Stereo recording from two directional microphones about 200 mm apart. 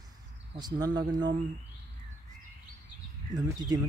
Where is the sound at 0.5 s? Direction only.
20° right (ahead or behind).